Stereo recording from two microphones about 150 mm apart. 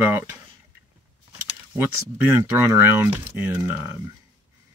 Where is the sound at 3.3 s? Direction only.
15° right (ahead or behind).